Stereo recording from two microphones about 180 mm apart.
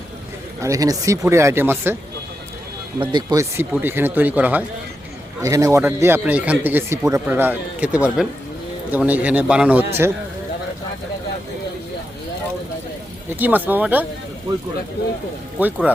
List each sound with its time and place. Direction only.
0.6 s speech: 20° right (ahead or behind)
3.0 s speech: 25° right (ahead or behind)
3.6 s speech: 10° right (ahead or behind)
13.4 s speech: 10° right (ahead or behind)
15.5 s speech: 10° right (ahead or behind)